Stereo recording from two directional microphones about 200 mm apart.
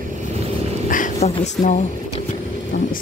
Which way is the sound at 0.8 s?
40° left (ahead or behind).